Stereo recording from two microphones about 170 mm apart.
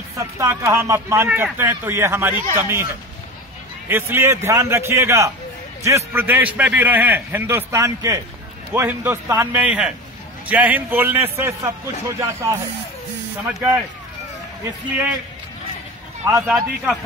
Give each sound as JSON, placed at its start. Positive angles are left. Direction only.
{"t": 0.2, "sound": "a man's voice", "side_deg": -15}
{"t": 3.9, "sound": "a man's voice", "side_deg": -15}
{"t": 16.3, "sound": "a man's voice", "side_deg": -10}
{"t": 16.5, "sound": "a man's voice", "side_deg": 5}